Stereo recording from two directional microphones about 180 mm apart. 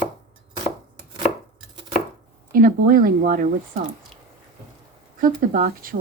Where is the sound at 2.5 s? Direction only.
50° right (ahead or behind).